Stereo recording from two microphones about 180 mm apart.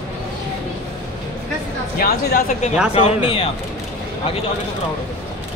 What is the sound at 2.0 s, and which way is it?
Speech, 50° left (ahead or behind).